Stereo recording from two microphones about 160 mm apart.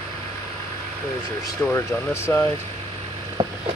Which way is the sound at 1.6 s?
15° left (ahead or behind).